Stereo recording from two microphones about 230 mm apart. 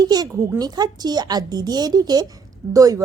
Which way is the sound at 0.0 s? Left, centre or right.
Centre.